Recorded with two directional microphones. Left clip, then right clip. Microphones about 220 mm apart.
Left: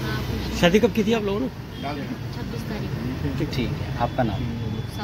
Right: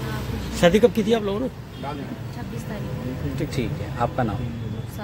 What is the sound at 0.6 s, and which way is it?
Speech, 15° right (ahead or behind).